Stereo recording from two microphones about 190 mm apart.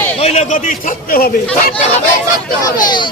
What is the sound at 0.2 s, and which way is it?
A man's voice, 35° left (ahead or behind).